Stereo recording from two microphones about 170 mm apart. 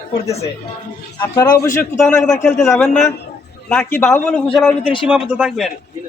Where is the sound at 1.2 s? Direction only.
20° left (ahead or behind).